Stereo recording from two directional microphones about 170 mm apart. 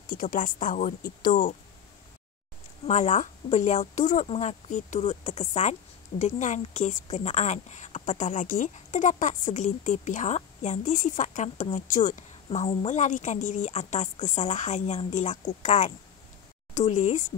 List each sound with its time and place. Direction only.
0.0 s speech: 55° left (ahead or behind)
2.9 s speech: 45° left (ahead or behind)